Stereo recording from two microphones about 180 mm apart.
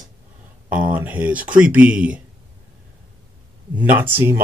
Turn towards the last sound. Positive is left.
turn(degrees=-10)  # may be behind; listen again after turning